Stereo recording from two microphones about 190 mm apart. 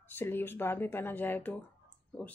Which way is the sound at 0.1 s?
10° left (ahead or behind).